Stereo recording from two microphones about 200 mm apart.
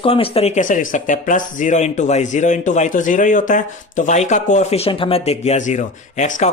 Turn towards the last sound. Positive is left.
turn(degrees=35)  # may be behind; listen again after turning